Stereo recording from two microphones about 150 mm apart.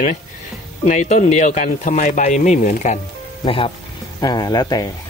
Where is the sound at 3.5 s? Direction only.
35° left (ahead or behind).